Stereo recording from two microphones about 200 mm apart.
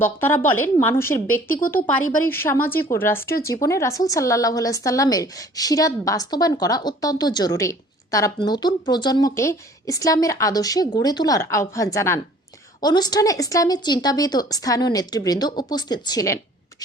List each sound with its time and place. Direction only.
0.0 s a woman's voice: 10° left (ahead or behind)